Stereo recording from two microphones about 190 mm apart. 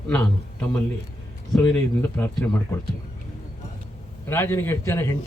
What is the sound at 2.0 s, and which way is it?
Speech, 10° left (ahead or behind).